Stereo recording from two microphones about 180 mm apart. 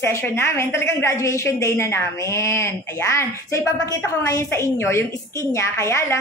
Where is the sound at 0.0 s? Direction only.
15° left (ahead or behind).